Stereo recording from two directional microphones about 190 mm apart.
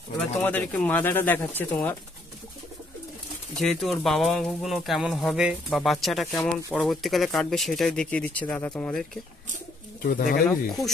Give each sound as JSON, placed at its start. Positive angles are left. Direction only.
{"t": 0.4, "sound": "speech", "side_deg": 10}
{"t": 3.5, "sound": "speech", "side_deg": 0}
{"t": 10.0, "sound": "speech", "side_deg": 50}